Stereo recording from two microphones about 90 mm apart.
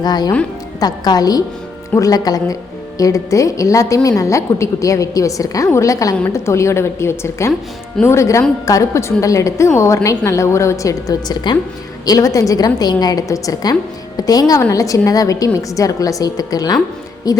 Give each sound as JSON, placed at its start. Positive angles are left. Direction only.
{"t": 0.0, "sound": "a woman's voice", "side_deg": 50}